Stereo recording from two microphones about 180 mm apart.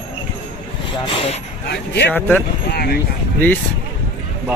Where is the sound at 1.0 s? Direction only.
30° left (ahead or behind).